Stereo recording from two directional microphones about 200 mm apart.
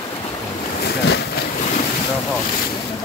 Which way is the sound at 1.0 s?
55° left (ahead or behind).